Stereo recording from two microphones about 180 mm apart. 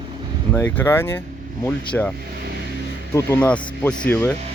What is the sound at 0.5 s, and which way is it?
Speech, 10° left (ahead or behind).